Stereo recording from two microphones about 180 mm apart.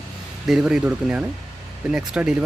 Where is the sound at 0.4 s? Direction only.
5° right (ahead or behind).